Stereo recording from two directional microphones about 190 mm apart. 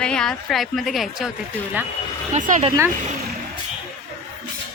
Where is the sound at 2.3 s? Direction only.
40° right (ahead or behind).